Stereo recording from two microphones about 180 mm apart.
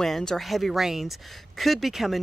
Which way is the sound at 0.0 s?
5° left (ahead or behind).